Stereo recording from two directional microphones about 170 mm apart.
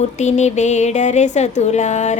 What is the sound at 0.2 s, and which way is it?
Speech, 45° left (ahead or behind).